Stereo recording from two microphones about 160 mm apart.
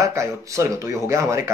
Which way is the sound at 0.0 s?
20° right (ahead or behind).